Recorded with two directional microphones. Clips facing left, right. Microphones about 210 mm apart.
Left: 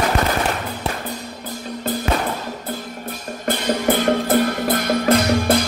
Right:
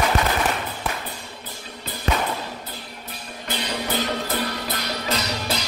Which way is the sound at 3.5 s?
50° left (ahead or behind).